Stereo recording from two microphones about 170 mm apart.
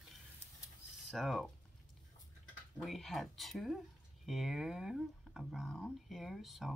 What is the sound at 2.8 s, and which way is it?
Speech, centre (ahead or behind).